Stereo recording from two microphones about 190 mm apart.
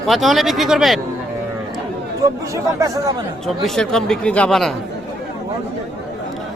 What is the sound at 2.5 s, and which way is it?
Speech, 20° right (ahead or behind).